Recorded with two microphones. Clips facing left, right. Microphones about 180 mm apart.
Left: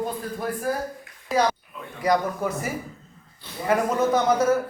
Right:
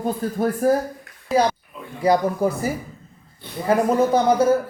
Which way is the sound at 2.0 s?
30° right (ahead or behind).